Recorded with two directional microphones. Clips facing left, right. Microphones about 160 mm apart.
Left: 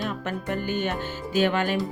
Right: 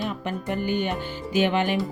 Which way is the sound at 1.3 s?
15° right (ahead or behind).